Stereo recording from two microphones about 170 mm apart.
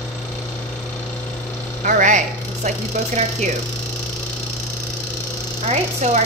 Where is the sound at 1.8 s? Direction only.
50° right (ahead or behind).